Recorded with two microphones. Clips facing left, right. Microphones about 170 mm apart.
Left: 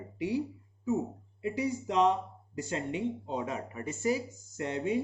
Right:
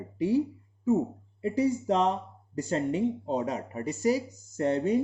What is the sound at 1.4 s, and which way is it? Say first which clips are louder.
Speech: right 6 dB; 40° right (ahead or behind).